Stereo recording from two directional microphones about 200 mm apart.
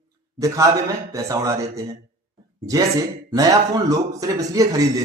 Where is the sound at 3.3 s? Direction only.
15° right (ahead or behind).